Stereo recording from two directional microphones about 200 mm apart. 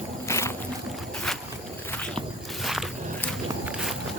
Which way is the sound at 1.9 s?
5° left (ahead or behind).